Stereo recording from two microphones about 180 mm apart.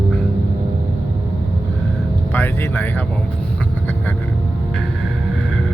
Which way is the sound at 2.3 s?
10° left (ahead or behind).